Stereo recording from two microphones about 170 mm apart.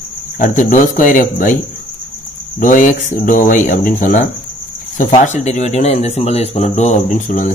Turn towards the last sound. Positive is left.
turn(degrees=45)  # may be behind; listen again after turning